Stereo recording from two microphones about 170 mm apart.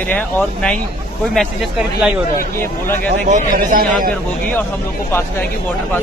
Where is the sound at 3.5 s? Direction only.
55° right (ahead or behind).